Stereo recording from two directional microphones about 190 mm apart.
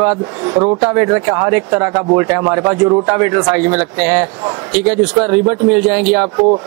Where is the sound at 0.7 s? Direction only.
10° right (ahead or behind).